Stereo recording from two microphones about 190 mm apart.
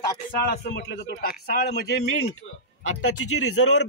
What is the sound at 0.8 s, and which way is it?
A man's voice, 50° left (ahead or behind).